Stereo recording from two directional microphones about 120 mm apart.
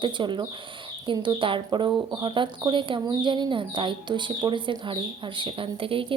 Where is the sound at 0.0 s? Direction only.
40° right (ahead or behind).